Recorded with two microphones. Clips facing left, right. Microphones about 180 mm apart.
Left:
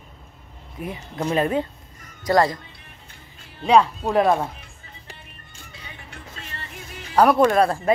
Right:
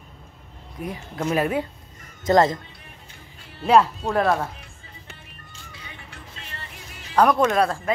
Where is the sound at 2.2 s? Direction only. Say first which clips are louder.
Right 1 dB; 25° right (ahead or behind).